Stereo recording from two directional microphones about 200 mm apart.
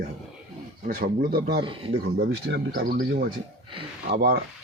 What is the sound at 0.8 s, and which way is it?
Speech, 45° right (ahead or behind).